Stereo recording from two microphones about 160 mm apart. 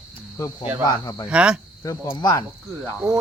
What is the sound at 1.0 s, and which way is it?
Speech, 25° left (ahead or behind).